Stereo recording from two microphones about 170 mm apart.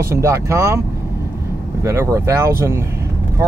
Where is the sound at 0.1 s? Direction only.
15° right (ahead or behind).